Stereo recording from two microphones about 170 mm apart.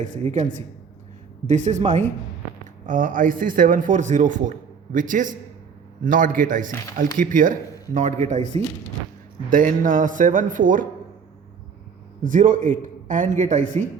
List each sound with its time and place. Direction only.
0.0 s a man's voice: 45° right (ahead or behind)
12.2 s a man's voice: 50° right (ahead or behind)